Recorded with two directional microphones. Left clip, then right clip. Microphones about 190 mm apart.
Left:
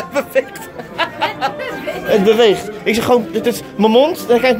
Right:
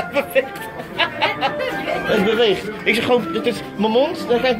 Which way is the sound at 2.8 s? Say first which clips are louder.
Left 3 dB; 30° left (ahead or behind).